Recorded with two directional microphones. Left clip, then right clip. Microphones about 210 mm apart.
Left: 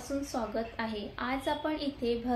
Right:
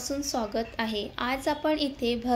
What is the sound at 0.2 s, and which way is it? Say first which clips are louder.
A woman's voice: right 6 dB; 40° right (ahead or behind).